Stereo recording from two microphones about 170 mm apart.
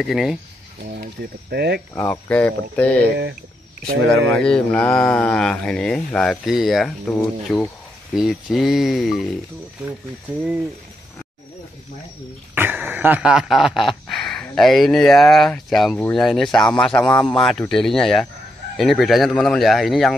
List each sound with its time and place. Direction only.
0.0 s speech: centre (ahead or behind)
0.9 s speech: 70° right (ahead or behind)
2.0 s speech: 10° left (ahead or behind)
4.1 s speech: 5° left (ahead or behind)
12.5 s a sound: 10° right (ahead or behind)
16.0 s speech: 5° left (ahead or behind)